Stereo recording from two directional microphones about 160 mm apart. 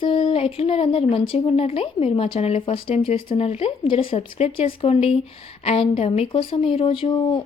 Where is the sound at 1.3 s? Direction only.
40° left (ahead or behind).